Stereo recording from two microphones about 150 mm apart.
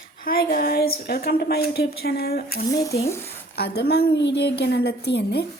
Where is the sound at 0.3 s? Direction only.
80° left.